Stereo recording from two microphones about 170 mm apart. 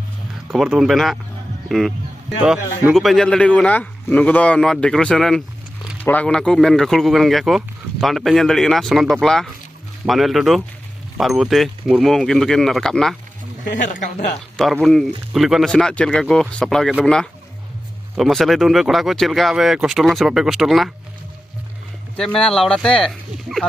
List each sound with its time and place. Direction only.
0.5 s speech: centre (ahead or behind)
13.8 s speech: 50° left (ahead or behind)
14.6 s speech: centre (ahead or behind)
22.1 s speech: 5° left (ahead or behind)